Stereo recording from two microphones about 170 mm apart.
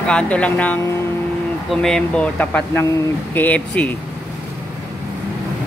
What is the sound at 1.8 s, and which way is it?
Speech, 5° left (ahead or behind).